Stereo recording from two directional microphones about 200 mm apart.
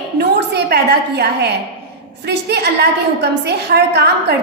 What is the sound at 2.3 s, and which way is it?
A woman's voice, 55° right (ahead or behind).